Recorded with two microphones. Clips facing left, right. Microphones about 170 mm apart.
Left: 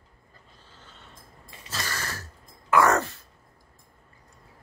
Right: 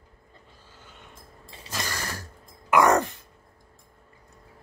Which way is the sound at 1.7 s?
15° right (ahead or behind).